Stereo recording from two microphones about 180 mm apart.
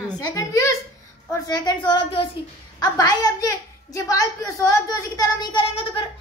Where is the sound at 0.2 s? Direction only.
20° left (ahead or behind).